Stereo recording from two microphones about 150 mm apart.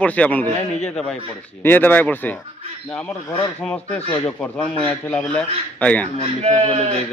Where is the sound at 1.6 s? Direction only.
15° left (ahead or behind).